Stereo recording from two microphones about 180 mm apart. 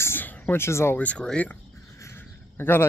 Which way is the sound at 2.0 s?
10° left (ahead or behind).